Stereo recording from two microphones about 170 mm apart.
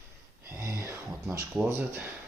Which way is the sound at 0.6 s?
15° right (ahead or behind).